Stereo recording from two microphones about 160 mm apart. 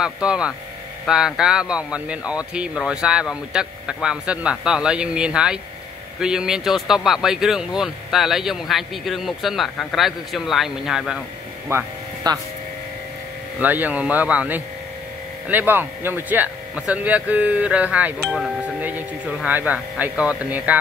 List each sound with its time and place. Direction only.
0.0 s speech: 5° right (ahead or behind)
11.7 s a sound: 25° right (ahead or behind)
13.6 s speech: 10° right (ahead or behind)